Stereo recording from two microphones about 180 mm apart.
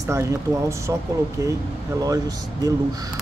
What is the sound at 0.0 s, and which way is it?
Speech, 15° right (ahead or behind).